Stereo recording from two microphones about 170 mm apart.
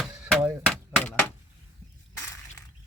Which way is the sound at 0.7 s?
5° left (ahead or behind).